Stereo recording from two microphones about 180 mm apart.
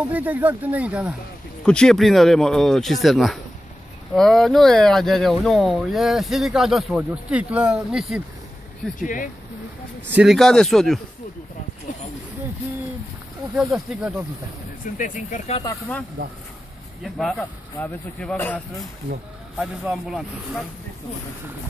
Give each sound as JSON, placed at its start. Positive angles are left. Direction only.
{"t": 0.1, "sound": "speech", "side_deg": -10}
{"t": 1.6, "sound": "speech", "side_deg": 5}
{"t": 9.0, "sound": "speech", "side_deg": 50}
{"t": 10.1, "sound": "speech", "side_deg": 0}
{"t": 13.6, "sound": "speech", "side_deg": -5}
{"t": 15.0, "sound": "speech", "side_deg": 45}
{"t": 17.0, "sound": "speech", "side_deg": 0}
{"t": 19.6, "sound": "speech", "side_deg": -5}